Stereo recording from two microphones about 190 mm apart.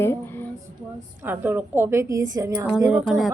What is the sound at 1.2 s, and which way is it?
A woman's voice, 10° right (ahead or behind).